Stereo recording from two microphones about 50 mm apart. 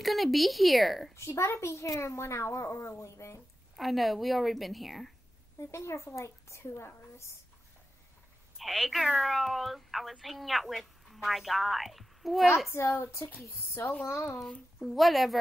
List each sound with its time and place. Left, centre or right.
0.0 s a woman's voice: centre
1.1 s a child's voice: left
3.0 s a child's voice: left
3.7 s speech: centre
5.6 s a woman's voice: left
8.5 s a woman's voice: centre
14.0 s a woman's voice: left
14.8 s speech: centre